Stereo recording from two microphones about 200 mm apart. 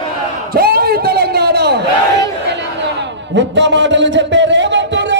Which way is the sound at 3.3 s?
60° right (ahead or behind).